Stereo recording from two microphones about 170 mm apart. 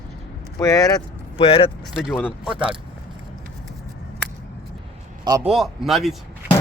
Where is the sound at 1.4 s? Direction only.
35° left (ahead or behind).